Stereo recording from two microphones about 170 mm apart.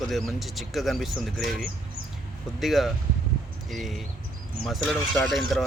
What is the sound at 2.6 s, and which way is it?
Speech, centre (ahead or behind).